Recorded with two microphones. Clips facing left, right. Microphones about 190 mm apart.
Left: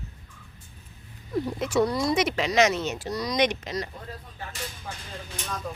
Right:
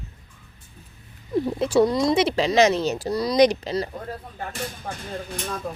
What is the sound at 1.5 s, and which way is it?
Speech, 30° right (ahead or behind).